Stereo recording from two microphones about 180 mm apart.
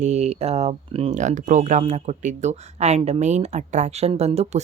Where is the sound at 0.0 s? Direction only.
35° right (ahead or behind).